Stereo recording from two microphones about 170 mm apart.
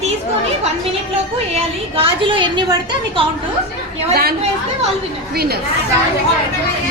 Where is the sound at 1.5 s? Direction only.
30° right (ahead or behind).